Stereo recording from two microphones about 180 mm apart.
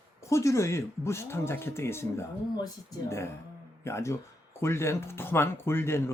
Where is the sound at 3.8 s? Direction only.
15° left (ahead or behind).